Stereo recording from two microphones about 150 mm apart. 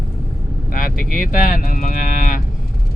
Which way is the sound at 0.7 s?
70° left (ahead or behind).